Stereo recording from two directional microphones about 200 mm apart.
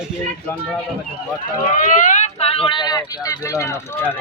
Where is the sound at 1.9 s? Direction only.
40° left (ahead or behind).